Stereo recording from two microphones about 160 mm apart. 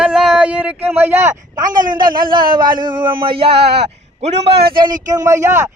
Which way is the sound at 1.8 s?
60° right (ahead or behind).